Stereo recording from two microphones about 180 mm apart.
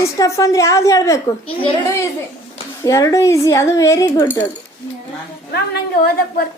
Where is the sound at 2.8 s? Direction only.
20° left (ahead or behind).